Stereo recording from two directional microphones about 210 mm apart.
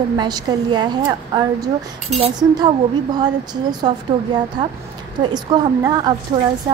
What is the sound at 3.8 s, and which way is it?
A woman's voice, 20° right (ahead or behind).